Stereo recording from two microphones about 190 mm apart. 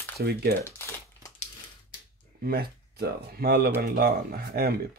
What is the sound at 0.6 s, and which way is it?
Crumpling, 15° left (ahead or behind).